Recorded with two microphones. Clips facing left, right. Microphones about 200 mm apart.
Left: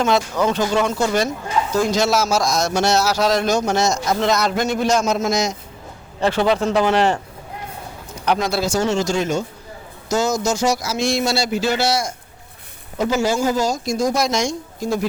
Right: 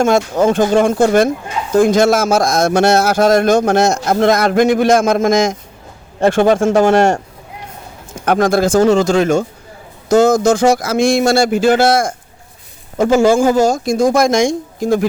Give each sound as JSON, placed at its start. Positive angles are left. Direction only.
{"t": 0.0, "sound": "a man's voice", "side_deg": -50}
{"t": 4.6, "sound": "speech", "side_deg": -90}
{"t": 4.9, "sound": "a man's voice", "side_deg": -55}